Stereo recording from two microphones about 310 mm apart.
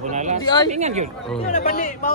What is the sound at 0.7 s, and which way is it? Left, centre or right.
Speech, right.